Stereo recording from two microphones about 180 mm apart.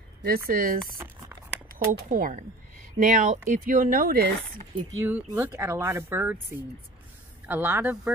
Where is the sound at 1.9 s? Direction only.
50° right (ahead or behind).